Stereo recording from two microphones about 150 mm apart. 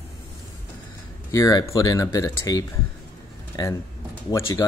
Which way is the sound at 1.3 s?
20° left (ahead or behind).